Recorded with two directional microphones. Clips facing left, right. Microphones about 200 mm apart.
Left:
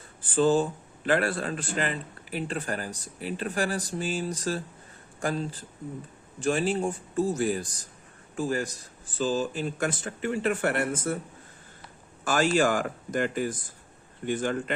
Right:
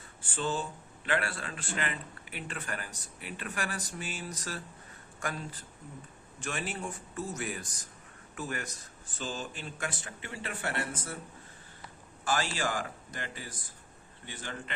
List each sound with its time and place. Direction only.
0.2 s speech: 35° left (ahead or behind)
12.2 s speech: 45° left (ahead or behind)